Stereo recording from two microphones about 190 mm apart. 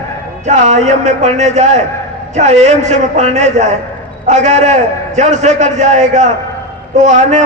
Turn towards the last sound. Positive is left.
turn(degrees=-40)  # may be behind; listen again after turning